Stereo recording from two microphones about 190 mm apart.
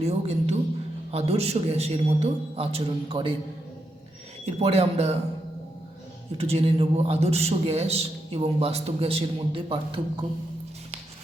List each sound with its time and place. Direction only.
0.0 s a man's voice: 35° right (ahead or behind)
4.4 s a man's voice: 35° right (ahead or behind)
6.3 s a man's voice: 30° right (ahead or behind)